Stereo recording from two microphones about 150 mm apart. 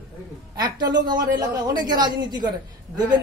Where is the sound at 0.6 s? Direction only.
30° right (ahead or behind).